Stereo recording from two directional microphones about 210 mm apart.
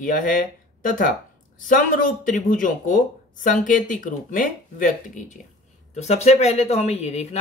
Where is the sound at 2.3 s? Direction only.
40° left (ahead or behind).